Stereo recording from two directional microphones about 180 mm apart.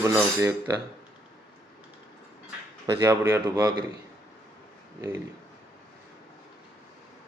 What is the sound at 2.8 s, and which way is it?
A man's voice, 15° right (ahead or behind).